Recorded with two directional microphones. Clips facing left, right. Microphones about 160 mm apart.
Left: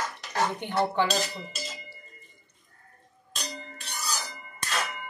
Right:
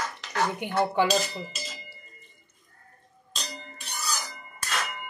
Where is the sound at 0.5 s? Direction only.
10° right (ahead or behind).